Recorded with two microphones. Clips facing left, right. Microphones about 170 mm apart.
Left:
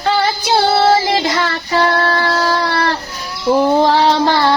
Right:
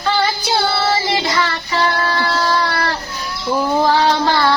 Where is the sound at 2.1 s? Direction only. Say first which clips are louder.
Left 2 dB; 40° left (ahead or behind).